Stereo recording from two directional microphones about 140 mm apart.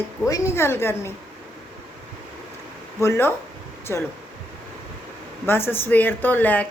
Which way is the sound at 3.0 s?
20° left (ahead or behind).